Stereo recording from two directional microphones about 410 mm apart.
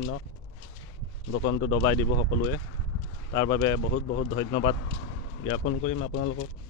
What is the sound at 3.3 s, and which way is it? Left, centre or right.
Speech, centre.